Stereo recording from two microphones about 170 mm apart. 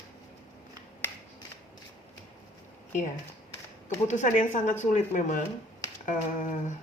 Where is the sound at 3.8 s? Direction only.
45° left (ahead or behind).